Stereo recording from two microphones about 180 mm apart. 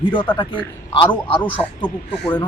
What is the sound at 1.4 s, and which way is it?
Speech, 10° left (ahead or behind).